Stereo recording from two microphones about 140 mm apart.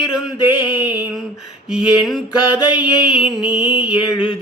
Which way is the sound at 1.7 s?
5° right (ahead or behind).